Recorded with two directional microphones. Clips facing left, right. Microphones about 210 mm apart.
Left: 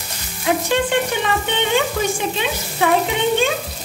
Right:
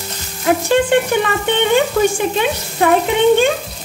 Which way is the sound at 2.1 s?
50° right (ahead or behind).